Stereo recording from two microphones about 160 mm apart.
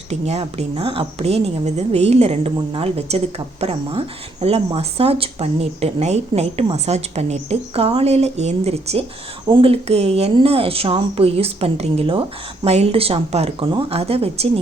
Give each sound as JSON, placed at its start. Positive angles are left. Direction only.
{"t": 0.1, "sound": "speech", "side_deg": -40}